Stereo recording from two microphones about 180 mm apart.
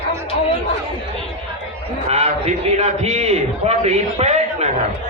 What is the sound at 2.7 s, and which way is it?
A man's voice, 35° right (ahead or behind).